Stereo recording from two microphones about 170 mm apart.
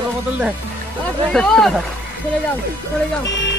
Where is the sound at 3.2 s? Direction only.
90° left.